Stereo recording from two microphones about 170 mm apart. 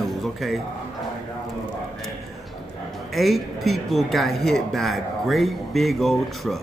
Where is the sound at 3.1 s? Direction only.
Centre (ahead or behind).